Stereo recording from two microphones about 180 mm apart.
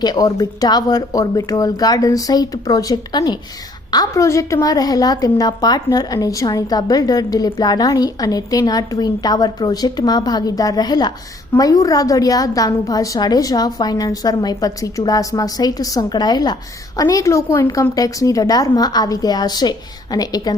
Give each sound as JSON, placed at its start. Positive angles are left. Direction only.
{"t": 0.0, "sound": "a woman's voice", "side_deg": 20}